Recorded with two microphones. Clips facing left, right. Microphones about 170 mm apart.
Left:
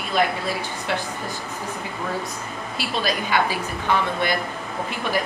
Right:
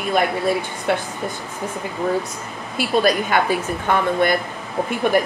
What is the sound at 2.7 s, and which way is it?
Speech, 50° right (ahead or behind).